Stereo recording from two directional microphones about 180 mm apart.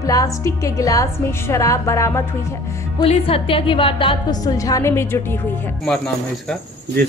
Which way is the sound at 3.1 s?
30° left (ahead or behind).